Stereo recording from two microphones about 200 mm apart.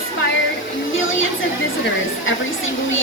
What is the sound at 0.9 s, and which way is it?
Speech, 75° left (ahead or behind).